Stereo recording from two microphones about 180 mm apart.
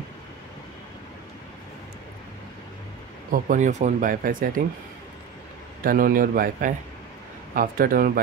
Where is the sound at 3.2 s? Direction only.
45° right (ahead or behind).